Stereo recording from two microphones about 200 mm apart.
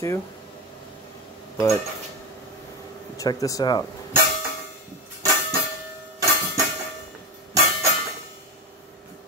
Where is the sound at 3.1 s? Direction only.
15° left (ahead or behind).